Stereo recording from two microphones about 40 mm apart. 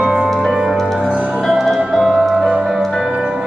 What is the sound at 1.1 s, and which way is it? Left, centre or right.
Music, right.